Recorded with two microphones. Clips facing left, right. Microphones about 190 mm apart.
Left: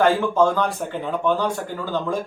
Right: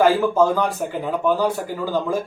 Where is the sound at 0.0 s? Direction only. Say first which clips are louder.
Right 1 dB; 5° right (ahead or behind).